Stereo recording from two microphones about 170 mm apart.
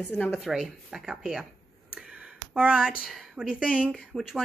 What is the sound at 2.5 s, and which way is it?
Speech, 5° right (ahead or behind).